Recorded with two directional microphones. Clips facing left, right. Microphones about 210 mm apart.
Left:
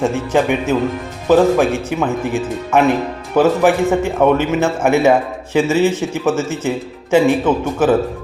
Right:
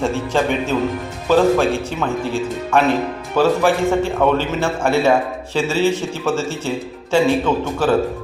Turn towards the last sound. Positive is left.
turn(degrees=15)  # may be behind; listen again after turning